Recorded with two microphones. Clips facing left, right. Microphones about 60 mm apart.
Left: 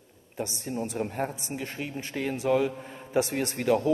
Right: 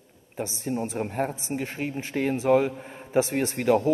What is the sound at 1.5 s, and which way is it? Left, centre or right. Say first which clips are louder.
A man's voice: right 4 dB; right.